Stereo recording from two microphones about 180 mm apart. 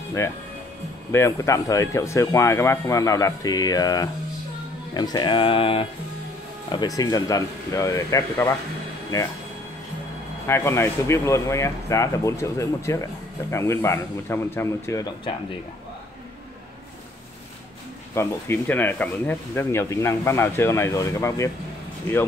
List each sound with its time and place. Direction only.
1.1 s speech: 15° left (ahead or behind)
10.4 s speech: 15° left (ahead or behind)
18.1 s speech: 15° left (ahead or behind)